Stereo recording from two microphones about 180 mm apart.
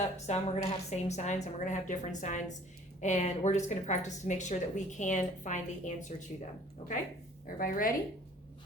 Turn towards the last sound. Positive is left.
turn(degrees=50)  # may be behind; listen again after turning